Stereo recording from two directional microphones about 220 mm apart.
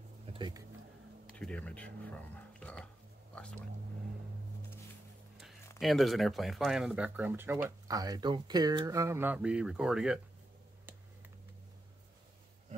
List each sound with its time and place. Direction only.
0.3 s a sound: 20° right (ahead or behind)
1.3 s speech: 5° left (ahead or behind)
5.4 s speech: centre (ahead or behind)